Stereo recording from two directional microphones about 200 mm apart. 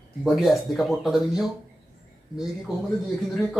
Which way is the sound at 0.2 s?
Centre (ahead or behind).